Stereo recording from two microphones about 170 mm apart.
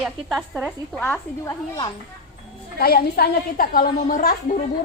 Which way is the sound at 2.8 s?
60° left (ahead or behind).